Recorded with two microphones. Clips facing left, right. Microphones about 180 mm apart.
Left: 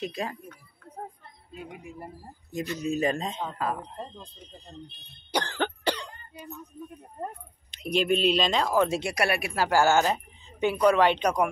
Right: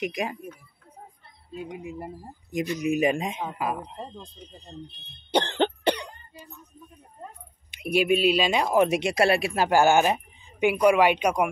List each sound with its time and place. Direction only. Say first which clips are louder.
0.0 s speech: right 3 dB; 15° right (ahead or behind)
5.3 s cough: right 5 dB; 25° right (ahead or behind)
7.7 s speech: right 3 dB; 10° right (ahead or behind)